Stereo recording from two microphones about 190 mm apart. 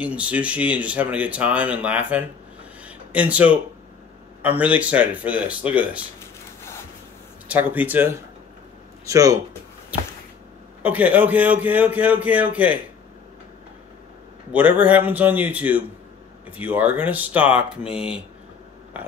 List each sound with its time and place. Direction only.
0.0 s speech: 5° right (ahead or behind)
2.8 s a sound: 5° right (ahead or behind)
4.4 s speech: 10° right (ahead or behind)
7.4 s speech: 10° right (ahead or behind)
10.8 s speech: 5° right (ahead or behind)
14.5 s speech: 10° right (ahead or behind)